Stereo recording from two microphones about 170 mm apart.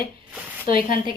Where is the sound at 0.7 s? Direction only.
55° left (ahead or behind).